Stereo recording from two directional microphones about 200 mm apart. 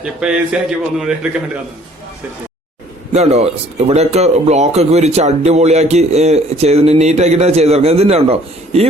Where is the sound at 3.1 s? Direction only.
35° right (ahead or behind).